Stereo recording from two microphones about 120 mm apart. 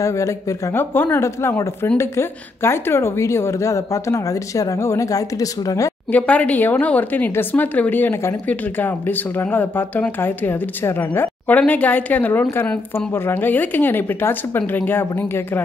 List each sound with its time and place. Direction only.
0.0 s speech: 25° left (ahead or behind)
6.1 s speech: 10° left (ahead or behind)